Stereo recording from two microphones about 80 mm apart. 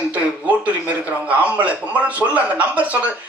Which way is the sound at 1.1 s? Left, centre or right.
Centre.